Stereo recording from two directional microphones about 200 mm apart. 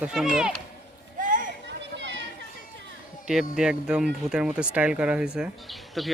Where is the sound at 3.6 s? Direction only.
5° right (ahead or behind).